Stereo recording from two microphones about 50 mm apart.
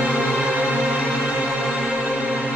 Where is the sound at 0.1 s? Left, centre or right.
Centre.